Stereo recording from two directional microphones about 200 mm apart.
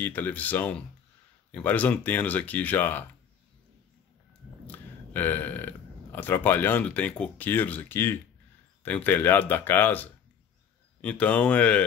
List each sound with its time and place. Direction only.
0.0 s speech: 10° left (ahead or behind)
4.6 s speech: 10° left (ahead or behind)